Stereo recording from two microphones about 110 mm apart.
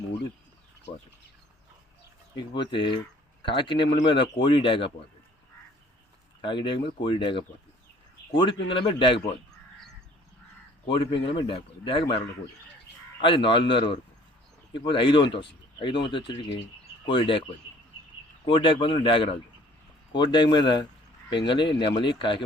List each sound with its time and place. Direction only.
2.3 s speech: 45° left (ahead or behind)
6.4 s speech: 45° left (ahead or behind)
10.8 s speech: 50° left (ahead or behind)
13.2 s speech: 50° left (ahead or behind)
18.4 s speech: 50° left (ahead or behind)